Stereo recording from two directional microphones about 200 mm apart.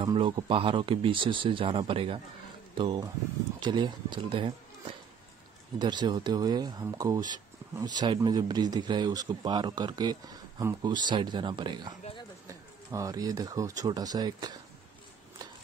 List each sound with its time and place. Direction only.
0.0 s speech: 20° right (ahead or behind)
5.8 s speech: 20° right (ahead or behind)
12.9 s speech: 20° right (ahead or behind)